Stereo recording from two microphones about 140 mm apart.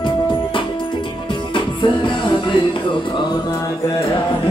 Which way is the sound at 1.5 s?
35° left (ahead or behind).